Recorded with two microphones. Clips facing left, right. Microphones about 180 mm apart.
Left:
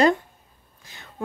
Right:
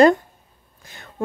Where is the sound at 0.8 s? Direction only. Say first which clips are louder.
Right 3 dB; 50° right (ahead or behind).